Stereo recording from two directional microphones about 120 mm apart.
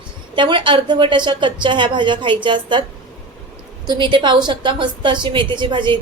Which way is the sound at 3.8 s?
40° right (ahead or behind).